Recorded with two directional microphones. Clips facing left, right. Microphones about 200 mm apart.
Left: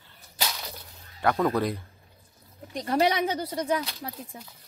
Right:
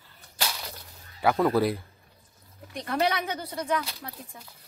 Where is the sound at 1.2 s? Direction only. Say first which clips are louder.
Right 2 dB; 5° right (ahead or behind).